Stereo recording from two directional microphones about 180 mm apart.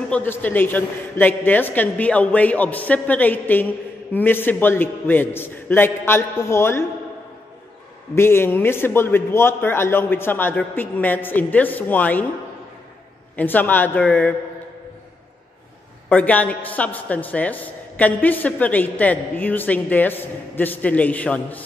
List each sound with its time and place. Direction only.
0.1 s a woman's voice: 10° left (ahead or behind)
8.1 s a woman's voice: 15° left (ahead or behind)
13.4 s a woman's voice: 10° left (ahead or behind)
16.1 s a woman's voice: 10° left (ahead or behind)